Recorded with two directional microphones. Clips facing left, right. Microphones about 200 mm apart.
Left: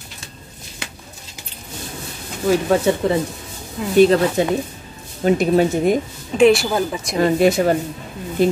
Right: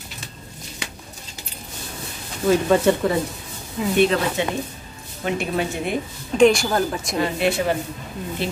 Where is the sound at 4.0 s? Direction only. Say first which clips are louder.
Left 7 dB; 40° left (ahead or behind).